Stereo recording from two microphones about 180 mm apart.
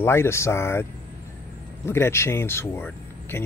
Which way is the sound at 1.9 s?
15° left (ahead or behind).